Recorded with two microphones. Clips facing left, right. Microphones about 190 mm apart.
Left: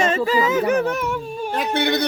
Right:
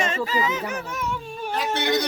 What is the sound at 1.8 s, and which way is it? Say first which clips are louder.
Speech: left 3 dB; 60° left (ahead or behind).